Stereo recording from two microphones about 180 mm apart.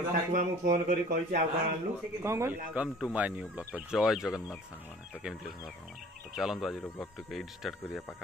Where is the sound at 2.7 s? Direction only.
5° right (ahead or behind).